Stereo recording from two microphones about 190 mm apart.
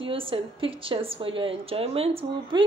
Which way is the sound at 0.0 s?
30° right (ahead or behind).